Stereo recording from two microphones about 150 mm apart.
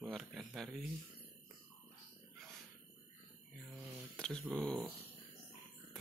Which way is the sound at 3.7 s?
10° right (ahead or behind).